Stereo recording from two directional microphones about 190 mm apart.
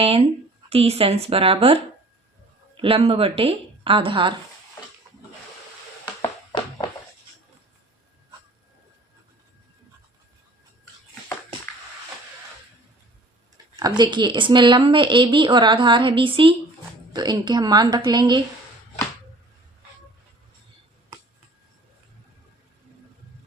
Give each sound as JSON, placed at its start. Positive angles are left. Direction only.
{"t": 0.0, "sound": "a woman's voice", "side_deg": -30}
{"t": 13.7, "sound": "a woman's voice", "side_deg": -20}